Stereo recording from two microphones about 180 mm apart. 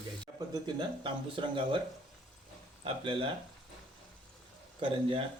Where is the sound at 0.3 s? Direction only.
25° right (ahead or behind).